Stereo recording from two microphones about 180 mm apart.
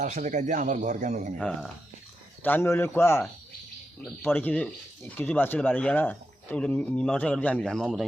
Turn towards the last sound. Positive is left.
turn(degrees=0)  # may be behind; listen again after turning